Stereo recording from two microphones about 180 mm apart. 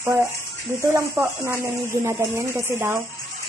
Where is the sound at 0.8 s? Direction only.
15° right (ahead or behind).